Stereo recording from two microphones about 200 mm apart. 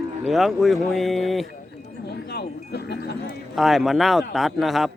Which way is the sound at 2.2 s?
55° left (ahead or behind).